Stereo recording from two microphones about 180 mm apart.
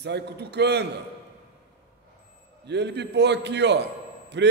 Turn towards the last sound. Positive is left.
turn(degrees=-75)  # may be behind; listen again after turning